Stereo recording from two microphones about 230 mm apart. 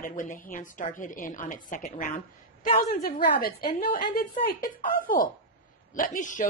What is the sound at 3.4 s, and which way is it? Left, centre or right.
Speech, left.